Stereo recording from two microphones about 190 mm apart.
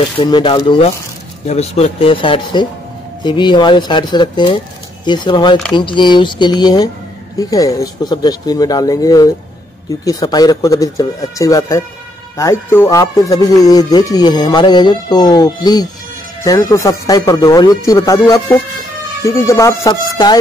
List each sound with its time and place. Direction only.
0.2 s speech: 25° left (ahead or behind)